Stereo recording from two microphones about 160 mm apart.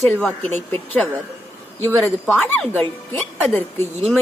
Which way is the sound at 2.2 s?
5° left (ahead or behind).